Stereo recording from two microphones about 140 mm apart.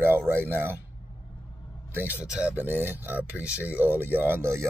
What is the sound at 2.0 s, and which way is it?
Speech, 10° right (ahead or behind).